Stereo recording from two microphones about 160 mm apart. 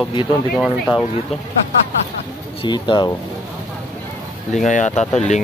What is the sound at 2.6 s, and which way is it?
Speech, 30° left (ahead or behind).